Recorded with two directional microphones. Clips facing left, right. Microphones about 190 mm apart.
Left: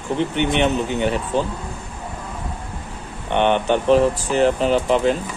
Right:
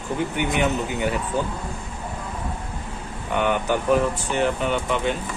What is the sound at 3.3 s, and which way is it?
Speech, 25° left (ahead or behind).